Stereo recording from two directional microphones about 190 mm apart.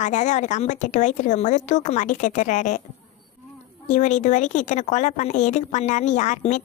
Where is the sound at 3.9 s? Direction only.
40° left (ahead or behind).